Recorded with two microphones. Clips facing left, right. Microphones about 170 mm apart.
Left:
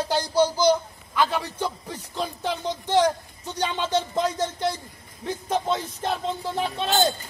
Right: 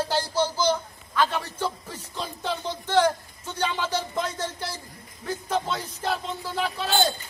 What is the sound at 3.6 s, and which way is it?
Speech, 20° left (ahead or behind).